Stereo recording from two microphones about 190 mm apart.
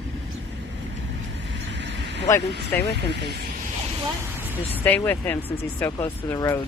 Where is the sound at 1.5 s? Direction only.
70° right (ahead or behind).